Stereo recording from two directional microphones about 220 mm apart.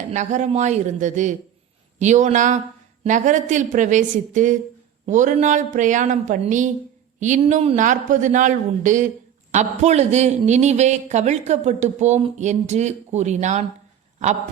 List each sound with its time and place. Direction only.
0.1 s speech: 35° right (ahead or behind)